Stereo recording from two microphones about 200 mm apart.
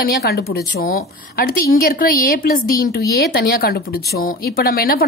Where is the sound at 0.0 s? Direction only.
50° left (ahead or behind).